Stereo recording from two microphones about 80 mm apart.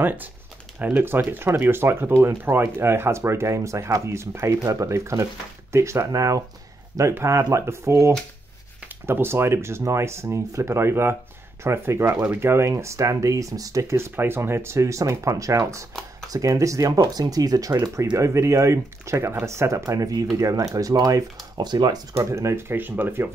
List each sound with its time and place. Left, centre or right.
0.0 s speech: right
18.1 s speech: right
21.5 s speech: right
22.1 s speech: right